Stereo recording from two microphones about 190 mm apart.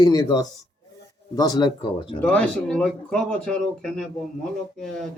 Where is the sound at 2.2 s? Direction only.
5° left (ahead or behind).